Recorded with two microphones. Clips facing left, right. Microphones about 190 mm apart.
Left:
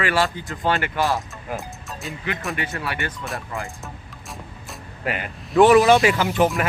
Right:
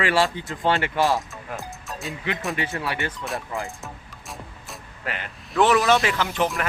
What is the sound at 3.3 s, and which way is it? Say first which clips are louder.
Speech: right 1 dB; centre (ahead or behind).